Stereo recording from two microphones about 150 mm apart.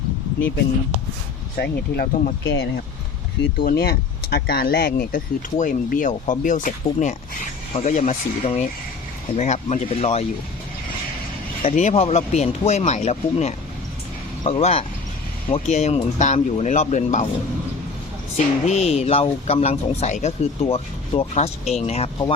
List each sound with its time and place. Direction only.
1.5 s speech: 90° left; by 2.3 s 75° left (ahead or behind)
3.6 s speech: 90° left; by 7.2 s 60° left (ahead or behind)
7.7 s speech: 50° left (ahead or behind)
11.6 s speech: 55° left (ahead or behind)
18.3 s speech: 50° left (ahead or behind)